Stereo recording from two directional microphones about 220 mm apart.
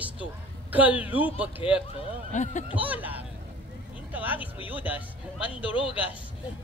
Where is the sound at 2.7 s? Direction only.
5° right (ahead or behind).